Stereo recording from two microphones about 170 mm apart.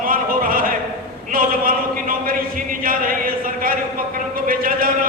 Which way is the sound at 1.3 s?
55° right (ahead or behind).